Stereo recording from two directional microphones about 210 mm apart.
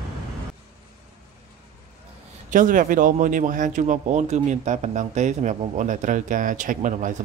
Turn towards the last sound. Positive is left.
turn(degrees=-35)  # may be behind; listen again after turning